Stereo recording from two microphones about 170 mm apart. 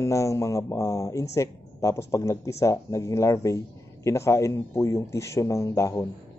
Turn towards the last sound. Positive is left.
turn(degrees=20)  # may be behind; listen again after turning